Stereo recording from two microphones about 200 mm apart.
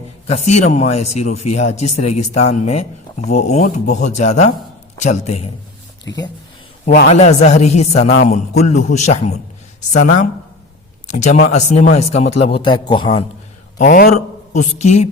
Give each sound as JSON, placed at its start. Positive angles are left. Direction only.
{"t": 0.3, "sound": "speech", "side_deg": 35}
{"t": 7.1, "sound": "speech", "side_deg": 35}
{"t": 13.7, "sound": "speech", "side_deg": 40}